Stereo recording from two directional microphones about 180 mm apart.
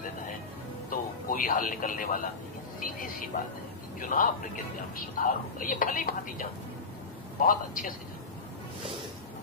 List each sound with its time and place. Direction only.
0.8 s speech: 50° left (ahead or behind)